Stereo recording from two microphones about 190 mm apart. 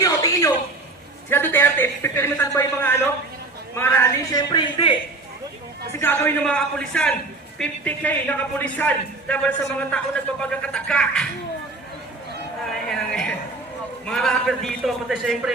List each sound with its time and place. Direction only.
0.0 s a sound: 20° left (ahead or behind)
1.3 s speech: 10° left (ahead or behind)
5.9 s a man's voice: 10° left (ahead or behind)
12.9 s a man's voice: 5° left (ahead or behind)